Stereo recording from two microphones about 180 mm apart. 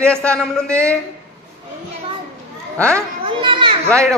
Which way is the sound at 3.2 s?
30° right (ahead or behind).